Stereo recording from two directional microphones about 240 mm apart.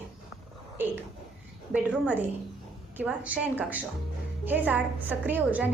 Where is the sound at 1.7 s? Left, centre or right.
Centre.